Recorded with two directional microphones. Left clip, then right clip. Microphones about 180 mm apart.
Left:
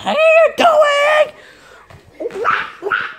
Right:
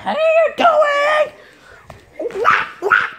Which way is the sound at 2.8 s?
35° right (ahead or behind).